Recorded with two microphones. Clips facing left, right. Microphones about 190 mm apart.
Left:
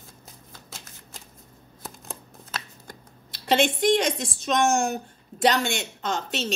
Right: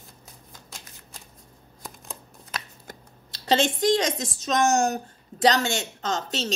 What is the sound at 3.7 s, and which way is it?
A woman's voice, 40° right (ahead or behind).